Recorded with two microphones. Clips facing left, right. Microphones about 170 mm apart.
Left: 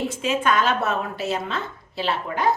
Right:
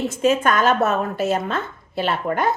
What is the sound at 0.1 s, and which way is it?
A woman's voice, 45° right (ahead or behind).